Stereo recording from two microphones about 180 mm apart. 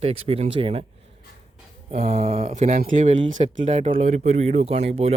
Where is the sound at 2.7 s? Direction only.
50° right (ahead or behind).